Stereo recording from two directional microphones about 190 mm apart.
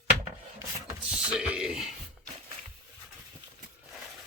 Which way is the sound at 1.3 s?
5° right (ahead or behind).